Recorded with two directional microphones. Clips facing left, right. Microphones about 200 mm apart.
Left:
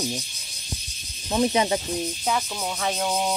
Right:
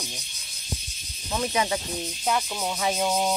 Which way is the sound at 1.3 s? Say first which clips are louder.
Left 5 dB; 25° left (ahead or behind).